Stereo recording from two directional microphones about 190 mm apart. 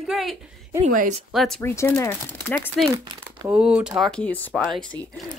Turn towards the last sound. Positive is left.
turn(degrees=5)  # may be behind; listen again after turning